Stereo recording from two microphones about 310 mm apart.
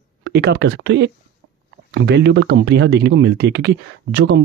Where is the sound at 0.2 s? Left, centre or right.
Right.